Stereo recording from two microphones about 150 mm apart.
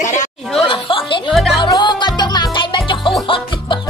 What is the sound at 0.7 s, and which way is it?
Speech, 35° left (ahead or behind).